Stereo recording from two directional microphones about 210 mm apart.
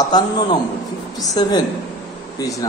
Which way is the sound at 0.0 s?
20° left (ahead or behind).